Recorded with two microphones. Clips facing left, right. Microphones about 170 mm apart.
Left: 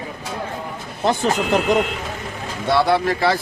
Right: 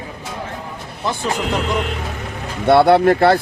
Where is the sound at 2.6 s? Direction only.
60° right (ahead or behind).